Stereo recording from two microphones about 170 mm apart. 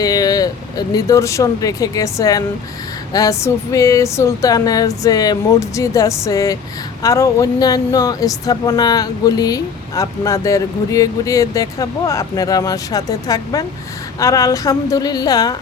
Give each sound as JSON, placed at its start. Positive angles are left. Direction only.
{"t": 0.0, "sound": "speech", "side_deg": 20}